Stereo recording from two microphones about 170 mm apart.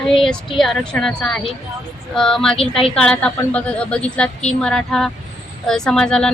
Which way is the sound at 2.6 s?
35° left (ahead or behind).